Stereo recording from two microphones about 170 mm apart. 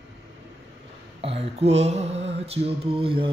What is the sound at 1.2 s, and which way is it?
Mantra, 35° right (ahead or behind).